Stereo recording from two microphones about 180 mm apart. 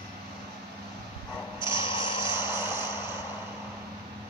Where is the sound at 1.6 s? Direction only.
25° left (ahead or behind).